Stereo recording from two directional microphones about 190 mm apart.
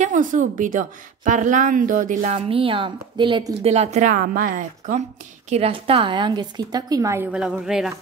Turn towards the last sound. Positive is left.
turn(degrees=-5)  # may be behind; listen again after turning